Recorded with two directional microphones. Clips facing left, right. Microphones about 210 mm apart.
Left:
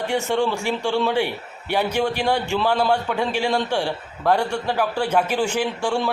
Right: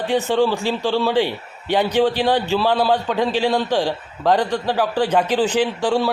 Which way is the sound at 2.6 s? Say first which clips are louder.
Right 2 dB; 10° right (ahead or behind).